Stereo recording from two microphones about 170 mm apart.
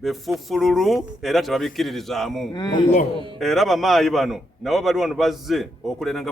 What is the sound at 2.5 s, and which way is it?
Speech, 25° left (ahead or behind).